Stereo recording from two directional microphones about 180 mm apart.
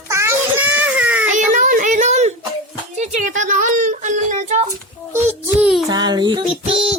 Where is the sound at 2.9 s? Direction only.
40° right (ahead or behind).